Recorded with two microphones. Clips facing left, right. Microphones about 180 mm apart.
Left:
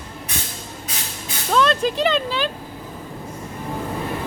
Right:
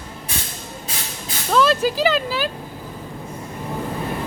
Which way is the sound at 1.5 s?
5° right (ahead or behind).